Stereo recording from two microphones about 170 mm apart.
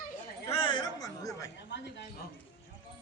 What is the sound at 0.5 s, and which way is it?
Speech, 30° left (ahead or behind).